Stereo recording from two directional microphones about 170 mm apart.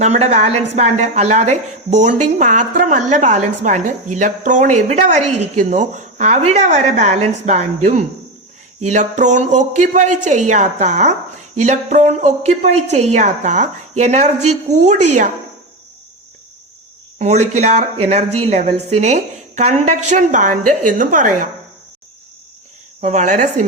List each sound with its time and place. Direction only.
0.0 s a woman's voice: 40° right (ahead or behind)
17.2 s speech: 40° right (ahead or behind)
23.0 s a woman's voice: 45° right (ahead or behind)